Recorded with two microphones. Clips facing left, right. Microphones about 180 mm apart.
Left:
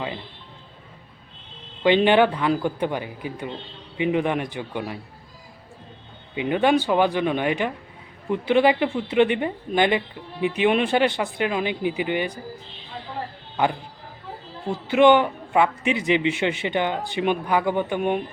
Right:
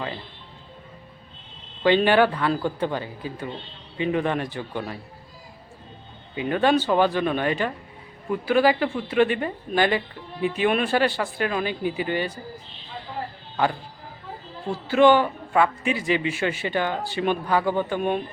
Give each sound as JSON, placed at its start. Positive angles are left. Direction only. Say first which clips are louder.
{"t": 1.8, "sound": "speech", "louder": "left 1 dB", "side_deg": 20}
{"t": 6.3, "sound": "a man's voice", "louder": "left 1 dB", "side_deg": 15}
{"t": 14.7, "sound": "a man's voice", "louder": "left 1 dB", "side_deg": 20}